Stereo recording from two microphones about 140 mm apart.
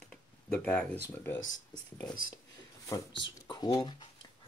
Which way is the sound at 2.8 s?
30° left (ahead or behind).